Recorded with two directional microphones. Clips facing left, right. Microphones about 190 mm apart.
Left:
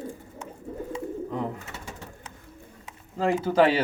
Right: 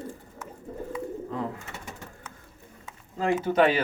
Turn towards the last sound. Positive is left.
turn(degrees=30)  # may be behind; listen again after turning